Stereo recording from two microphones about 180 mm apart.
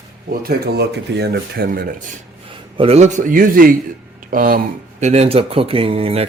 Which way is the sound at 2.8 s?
35° right (ahead or behind).